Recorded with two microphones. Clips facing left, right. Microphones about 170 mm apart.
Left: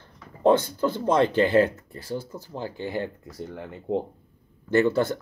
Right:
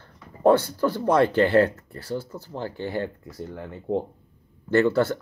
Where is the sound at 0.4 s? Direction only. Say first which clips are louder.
Right 1 dB; 20° left (ahead or behind).